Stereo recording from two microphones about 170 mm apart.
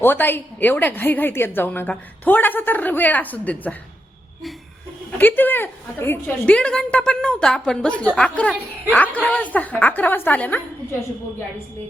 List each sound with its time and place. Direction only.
0.0 s a woman's voice: 10° left (ahead or behind)
5.1 s a woman's voice: 10° left (ahead or behind)